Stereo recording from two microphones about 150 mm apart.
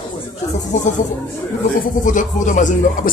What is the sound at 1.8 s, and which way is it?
Speech, 60° left (ahead or behind).